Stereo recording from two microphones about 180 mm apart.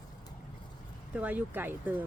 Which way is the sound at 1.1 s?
10° right (ahead or behind).